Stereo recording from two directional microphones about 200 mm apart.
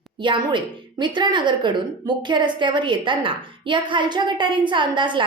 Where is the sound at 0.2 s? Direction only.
25° right (ahead or behind).